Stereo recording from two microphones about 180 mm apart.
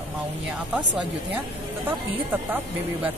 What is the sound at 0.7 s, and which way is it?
Speech, 5° right (ahead or behind).